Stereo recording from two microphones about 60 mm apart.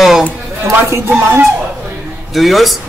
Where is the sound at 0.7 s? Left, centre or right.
Right.